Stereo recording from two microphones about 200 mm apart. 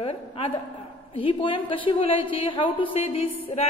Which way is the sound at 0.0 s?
30° left (ahead or behind).